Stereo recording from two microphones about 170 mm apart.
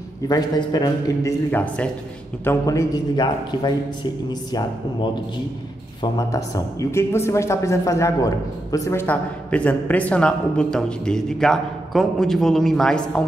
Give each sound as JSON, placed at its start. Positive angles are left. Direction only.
{"t": 0.3, "sound": "a man's voice", "side_deg": 20}
{"t": 1.5, "sound": "a man's voice", "side_deg": 10}
{"t": 6.1, "sound": "a man's voice", "side_deg": 20}